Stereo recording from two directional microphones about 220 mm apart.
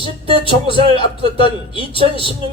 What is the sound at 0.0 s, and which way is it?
A man's voice, 20° left (ahead or behind).